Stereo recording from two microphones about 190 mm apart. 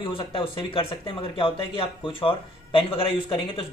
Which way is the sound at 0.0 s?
30° left (ahead or behind).